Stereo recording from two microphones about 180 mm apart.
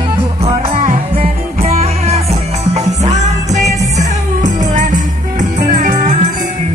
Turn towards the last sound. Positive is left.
turn(degrees=-45)  # may be behind; listen again after turning